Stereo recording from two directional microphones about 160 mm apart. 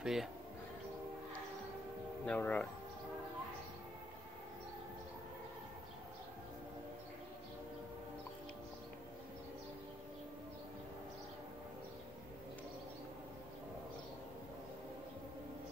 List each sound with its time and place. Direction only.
0.0 s speech: centre (ahead or behind)
2.2 s speech: 10° left (ahead or behind)